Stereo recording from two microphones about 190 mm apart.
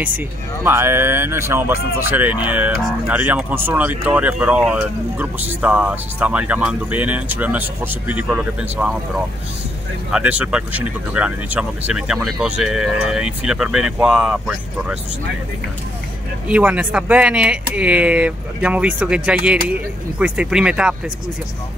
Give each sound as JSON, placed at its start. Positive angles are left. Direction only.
{"t": 0.7, "sound": "speech", "side_deg": -15}
{"t": 16.4, "sound": "speech", "side_deg": -5}